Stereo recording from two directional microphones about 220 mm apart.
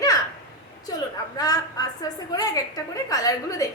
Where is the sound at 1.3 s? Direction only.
15° left (ahead or behind).